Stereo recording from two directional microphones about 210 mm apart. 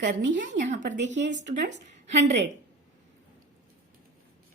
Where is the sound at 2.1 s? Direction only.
35° right (ahead or behind).